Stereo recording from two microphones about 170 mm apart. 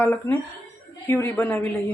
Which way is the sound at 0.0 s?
10° left (ahead or behind).